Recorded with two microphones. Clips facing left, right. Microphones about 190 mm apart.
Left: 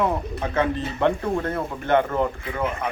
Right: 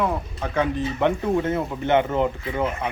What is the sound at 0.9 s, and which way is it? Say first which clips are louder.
Speech: right 1 dB; 15° right (ahead or behind).